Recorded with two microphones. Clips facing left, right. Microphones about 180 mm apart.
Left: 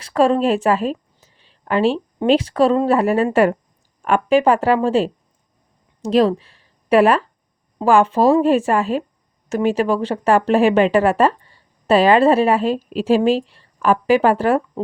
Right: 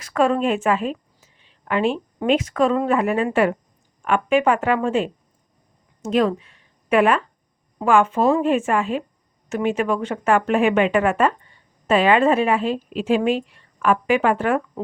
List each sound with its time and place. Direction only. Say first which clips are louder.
0.0 s a woman's voice: left 3 dB; 30° left (ahead or behind)